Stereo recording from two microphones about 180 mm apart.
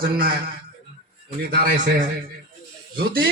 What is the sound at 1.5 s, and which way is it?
Speech, 55° right (ahead or behind).